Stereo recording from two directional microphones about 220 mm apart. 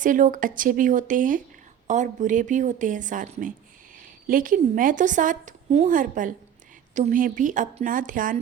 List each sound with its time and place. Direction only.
0.0 s a woman's voice: 35° right (ahead or behind)